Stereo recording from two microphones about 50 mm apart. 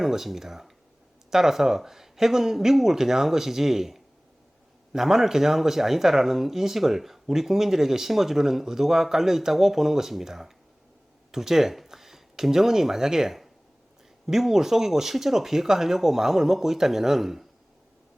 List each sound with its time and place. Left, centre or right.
0.0 s speech: centre